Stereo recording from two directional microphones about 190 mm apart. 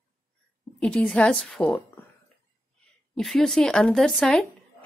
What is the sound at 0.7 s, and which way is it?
Speech, 5° left (ahead or behind).